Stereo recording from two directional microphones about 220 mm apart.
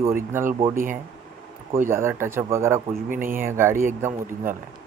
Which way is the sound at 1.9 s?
10° right (ahead or behind).